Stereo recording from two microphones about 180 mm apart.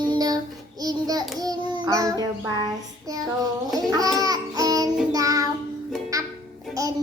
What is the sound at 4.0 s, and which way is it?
Babbling, 20° right (ahead or behind).